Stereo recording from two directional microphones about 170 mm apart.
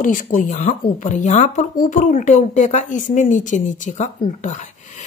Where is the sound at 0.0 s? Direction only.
50° left (ahead or behind).